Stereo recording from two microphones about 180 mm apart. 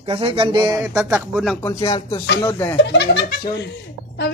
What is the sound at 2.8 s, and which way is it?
Speech, 70° left (ahead or behind).